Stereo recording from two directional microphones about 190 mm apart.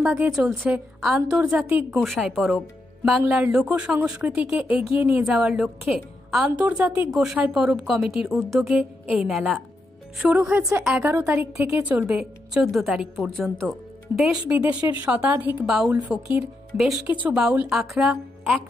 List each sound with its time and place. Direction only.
0.0 s a woman's voice: 5° right (ahead or behind)
2.0 s a woman's voice: centre (ahead or behind)
14.8 s speech: 20° right (ahead or behind)
15.0 s a woman's voice: 5° right (ahead or behind)
17.0 s a woman's voice: 10° right (ahead or behind)